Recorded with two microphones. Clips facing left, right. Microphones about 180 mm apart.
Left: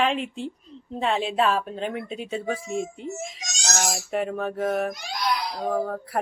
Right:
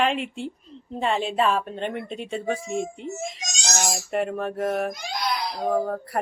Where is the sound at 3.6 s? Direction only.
15° right (ahead or behind).